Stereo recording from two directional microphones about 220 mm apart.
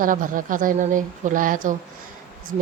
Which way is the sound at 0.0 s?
35° right (ahead or behind).